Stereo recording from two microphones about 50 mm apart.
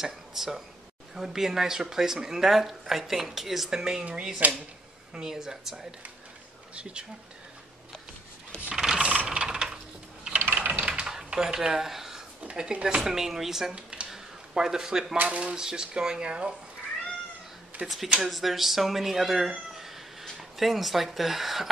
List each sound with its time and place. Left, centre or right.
0.0 s speech: centre
6.7 s speech: right
8.7 s typing: centre
9.0 s a sound: right
9.4 s a sound: centre
10.3 s ratchet: right
10.8 s a sound: right
11.3 s speech: centre
12.4 s speech: right
13.7 s computer keyboard: right
14.1 s a sound: centre
15.2 s speech: right
17.8 s a woman's voice: centre